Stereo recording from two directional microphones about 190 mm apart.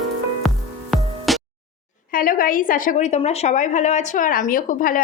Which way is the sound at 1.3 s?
Centre (ahead or behind).